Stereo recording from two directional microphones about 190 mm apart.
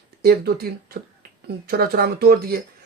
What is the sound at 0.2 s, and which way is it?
Speech, 55° right (ahead or behind).